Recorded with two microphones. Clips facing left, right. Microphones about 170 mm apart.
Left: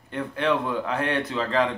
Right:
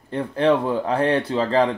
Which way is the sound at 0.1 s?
30° right (ahead or behind).